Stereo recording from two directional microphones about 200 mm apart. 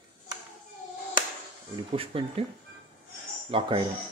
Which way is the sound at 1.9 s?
30° right (ahead or behind).